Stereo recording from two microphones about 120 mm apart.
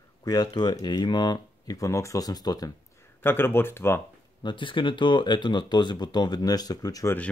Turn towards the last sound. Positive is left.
turn(degrees=30)  # may be behind; listen again after turning